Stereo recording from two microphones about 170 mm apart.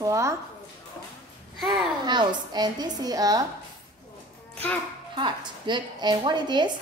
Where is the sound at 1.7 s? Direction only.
25° right (ahead or behind).